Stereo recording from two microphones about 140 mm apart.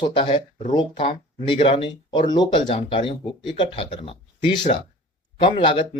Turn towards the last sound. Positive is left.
turn(degrees=40)  # may be behind; listen again after turning